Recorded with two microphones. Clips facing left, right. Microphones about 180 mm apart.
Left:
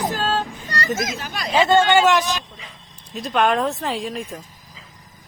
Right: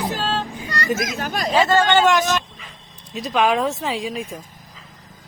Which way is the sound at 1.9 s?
Centre (ahead or behind).